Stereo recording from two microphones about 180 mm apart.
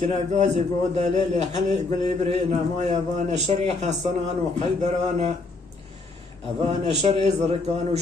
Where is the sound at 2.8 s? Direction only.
40° right (ahead or behind).